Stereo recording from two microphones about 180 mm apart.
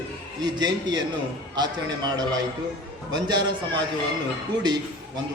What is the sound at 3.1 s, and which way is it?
Speech, 25° right (ahead or behind).